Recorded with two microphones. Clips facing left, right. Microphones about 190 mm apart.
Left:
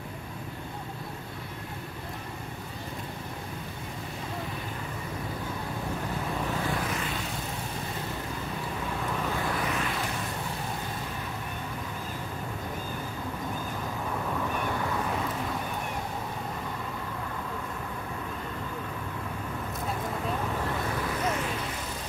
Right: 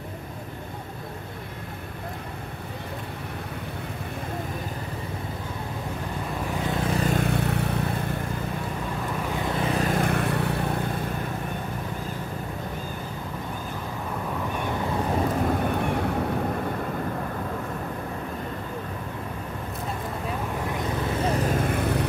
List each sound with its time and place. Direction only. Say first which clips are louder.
6.9 s vehicle: right 8 dB; 40° right (ahead or behind)
7.2 s vehicle: right 10 dB; 60° right (ahead or behind)
9.4 s vehicle: right 5 dB; 25° right (ahead or behind)
9.9 s vehicle: right 9 dB; 60° right (ahead or behind)
15.0 s vehicle: right 7 dB; 45° right (ahead or behind); by 16.1 s 65° right (ahead or behind)
20.7 s vehicle: right 4 dB; 20° right (ahead or behind); by 22.0 s 60° right (ahead or behind)